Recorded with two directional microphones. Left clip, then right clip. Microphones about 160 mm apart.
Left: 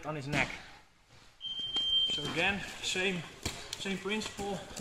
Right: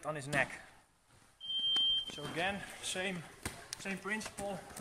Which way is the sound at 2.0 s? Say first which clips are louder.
Left 6 dB; 45° right (ahead or behind).